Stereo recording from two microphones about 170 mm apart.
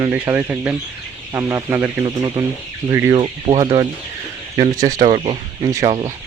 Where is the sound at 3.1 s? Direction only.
30° right (ahead or behind).